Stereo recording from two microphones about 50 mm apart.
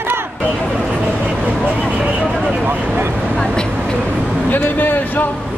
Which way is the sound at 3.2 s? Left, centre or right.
Centre.